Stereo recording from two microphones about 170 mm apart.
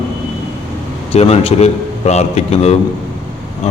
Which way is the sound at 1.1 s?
35° left (ahead or behind).